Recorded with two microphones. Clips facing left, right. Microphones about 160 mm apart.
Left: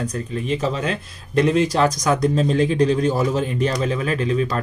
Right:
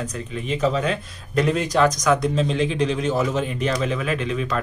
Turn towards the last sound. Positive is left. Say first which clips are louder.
# left 3 dB
turn(degrees=35)  # may be behind; listen again after turning